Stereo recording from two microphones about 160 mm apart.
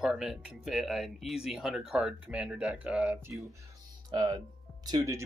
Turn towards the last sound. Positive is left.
turn(degrees=-20)  # may be behind; listen again after turning